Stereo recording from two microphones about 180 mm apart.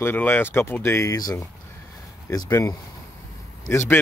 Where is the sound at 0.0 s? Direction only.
10° left (ahead or behind).